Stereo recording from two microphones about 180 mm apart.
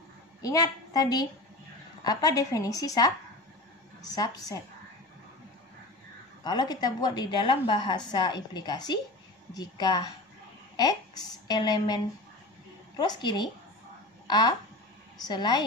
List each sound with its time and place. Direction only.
0.4 s a woman's voice: 20° left (ahead or behind)
6.4 s a woman's voice: 20° left (ahead or behind)
11.4 s a woman's voice: 25° left (ahead or behind)